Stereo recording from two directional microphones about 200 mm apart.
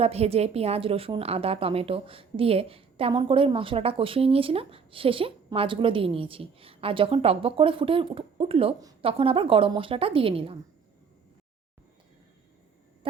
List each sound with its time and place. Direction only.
0.0 s a woman's voice: 30° right (ahead or behind)